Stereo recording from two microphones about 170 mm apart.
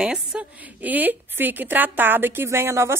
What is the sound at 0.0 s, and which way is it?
A woman's voice, 5° right (ahead or behind).